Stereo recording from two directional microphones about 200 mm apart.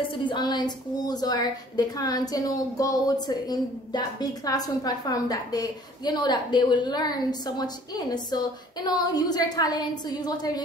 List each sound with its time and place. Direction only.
0.2 s a woman's voice: 25° left (ahead or behind)